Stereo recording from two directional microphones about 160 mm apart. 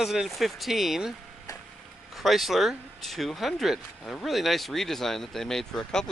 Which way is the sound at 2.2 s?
Centre (ahead or behind).